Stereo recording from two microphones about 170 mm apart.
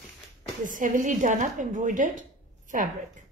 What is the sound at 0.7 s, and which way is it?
A woman's voice, 50° right (ahead or behind).